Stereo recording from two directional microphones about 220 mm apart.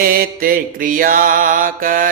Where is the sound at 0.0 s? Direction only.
40° right (ahead or behind).